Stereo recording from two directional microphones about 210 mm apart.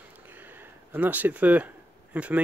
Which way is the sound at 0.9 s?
10° right (ahead or behind).